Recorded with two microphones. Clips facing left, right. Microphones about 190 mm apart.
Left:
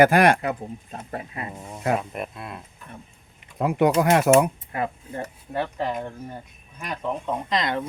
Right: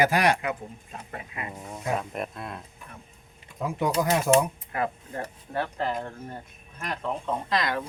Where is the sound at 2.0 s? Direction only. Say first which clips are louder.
Left 1 dB; 5° left (ahead or behind).